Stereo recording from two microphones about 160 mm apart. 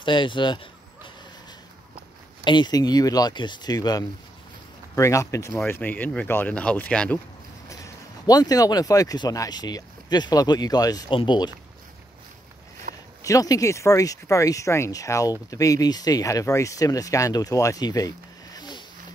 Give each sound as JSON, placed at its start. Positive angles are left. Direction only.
{"t": 0.0, "sound": "speech", "side_deg": 30}
{"t": 2.4, "sound": "speech", "side_deg": 30}
{"t": 7.7, "sound": "speech", "side_deg": 25}
{"t": 12.9, "sound": "a sound", "side_deg": -60}
{"t": 13.2, "sound": "speech", "side_deg": 20}